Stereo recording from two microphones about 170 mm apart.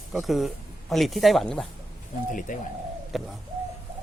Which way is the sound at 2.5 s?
50° left (ahead or behind).